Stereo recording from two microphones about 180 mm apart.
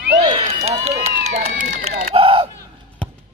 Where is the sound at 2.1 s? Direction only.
30° right (ahead or behind).